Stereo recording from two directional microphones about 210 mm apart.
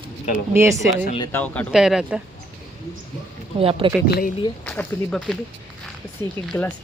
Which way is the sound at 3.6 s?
25° right (ahead or behind).